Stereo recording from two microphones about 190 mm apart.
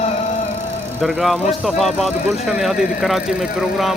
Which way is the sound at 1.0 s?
Centre (ahead or behind).